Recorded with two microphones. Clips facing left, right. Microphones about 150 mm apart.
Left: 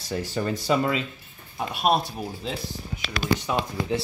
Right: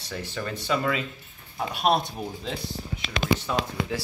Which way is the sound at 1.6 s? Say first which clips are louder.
Left 1 dB; 5° left (ahead or behind).